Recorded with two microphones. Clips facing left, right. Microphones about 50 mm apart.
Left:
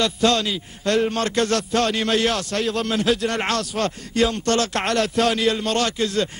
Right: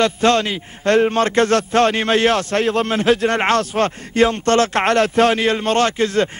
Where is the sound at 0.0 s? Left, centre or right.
Right.